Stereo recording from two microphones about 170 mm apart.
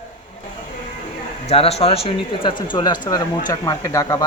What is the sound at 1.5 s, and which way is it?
Speech, 35° left (ahead or behind).